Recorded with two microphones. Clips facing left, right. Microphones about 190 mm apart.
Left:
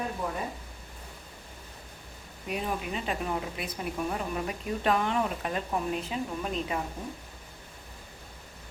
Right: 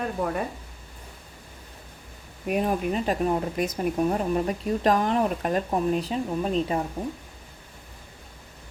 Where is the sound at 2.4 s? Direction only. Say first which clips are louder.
Right 8 dB; 50° right (ahead or behind).